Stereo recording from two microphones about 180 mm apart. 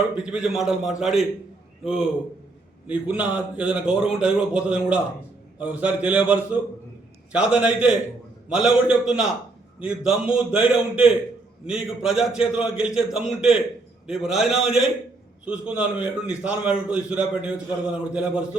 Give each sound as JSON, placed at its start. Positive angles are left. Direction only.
{"t": 0.2, "sound": "a man's voice", "side_deg": -5}